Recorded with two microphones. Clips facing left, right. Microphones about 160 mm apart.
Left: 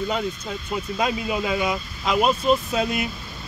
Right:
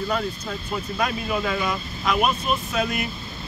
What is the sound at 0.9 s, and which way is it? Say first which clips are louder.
Speech: left 1 dB; 15° left (ahead or behind).